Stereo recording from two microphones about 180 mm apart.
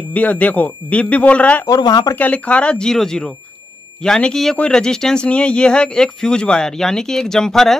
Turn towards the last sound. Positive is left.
turn(degrees=0)  # may be behind; listen again after turning